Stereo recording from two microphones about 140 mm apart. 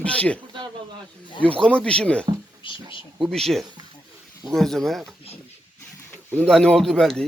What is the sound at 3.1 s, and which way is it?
Speech, centre (ahead or behind).